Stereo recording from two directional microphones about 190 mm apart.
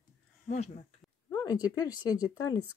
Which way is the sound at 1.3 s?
20° left (ahead or behind).